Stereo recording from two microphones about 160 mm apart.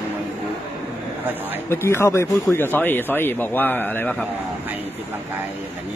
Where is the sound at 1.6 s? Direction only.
15° left (ahead or behind).